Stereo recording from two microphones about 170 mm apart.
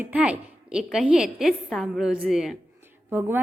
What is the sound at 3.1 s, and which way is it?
Speech, 15° right (ahead or behind).